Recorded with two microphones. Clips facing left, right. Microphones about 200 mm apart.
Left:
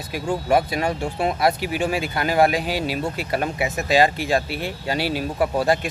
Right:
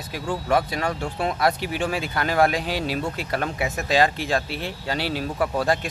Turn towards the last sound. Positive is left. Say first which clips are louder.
# left 3 dB
turn(degrees=10)  # may be behind; listen again after turning